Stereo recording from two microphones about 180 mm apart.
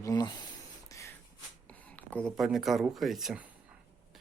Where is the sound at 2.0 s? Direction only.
5° left (ahead or behind).